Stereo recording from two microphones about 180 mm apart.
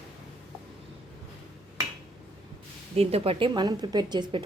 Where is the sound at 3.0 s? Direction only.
35° right (ahead or behind).